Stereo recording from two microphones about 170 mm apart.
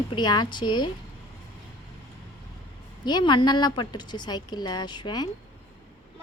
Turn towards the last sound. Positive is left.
turn(degrees=25)  # may be behind; listen again after turning